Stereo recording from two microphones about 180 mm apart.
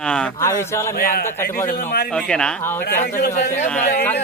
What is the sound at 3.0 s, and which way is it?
Speech, 60° left (ahead or behind).